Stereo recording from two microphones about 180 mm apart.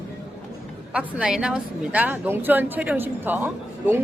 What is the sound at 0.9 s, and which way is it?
Speech, 5° right (ahead or behind).